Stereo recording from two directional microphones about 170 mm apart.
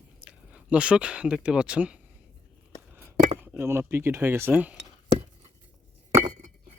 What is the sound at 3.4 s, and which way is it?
Speech, 10° right (ahead or behind).